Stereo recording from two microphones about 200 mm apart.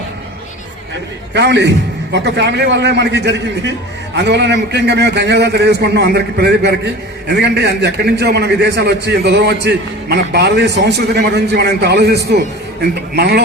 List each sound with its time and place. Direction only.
1.3 s a man's voice: 60° right (ahead or behind)